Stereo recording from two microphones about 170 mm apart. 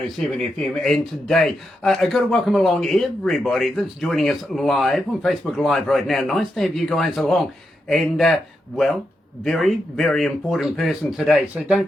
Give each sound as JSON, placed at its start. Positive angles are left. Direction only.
{"t": 0.2, "sound": "speech", "side_deg": 0}